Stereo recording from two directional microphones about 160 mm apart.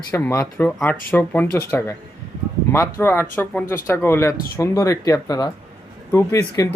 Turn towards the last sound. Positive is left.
turn(degrees=20)  # may be behind; listen again after turning